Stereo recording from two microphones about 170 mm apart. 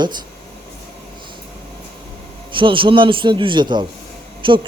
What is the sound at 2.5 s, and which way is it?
A man's voice, 30° right (ahead or behind).